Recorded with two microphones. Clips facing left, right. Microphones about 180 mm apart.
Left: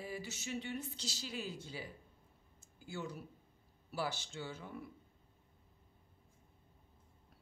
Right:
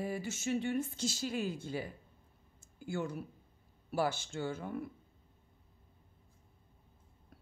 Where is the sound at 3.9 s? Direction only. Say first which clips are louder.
Right 7 dB; 50° right (ahead or behind).